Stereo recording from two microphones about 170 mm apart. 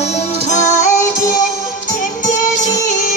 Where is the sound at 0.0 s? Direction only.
40° left (ahead or behind).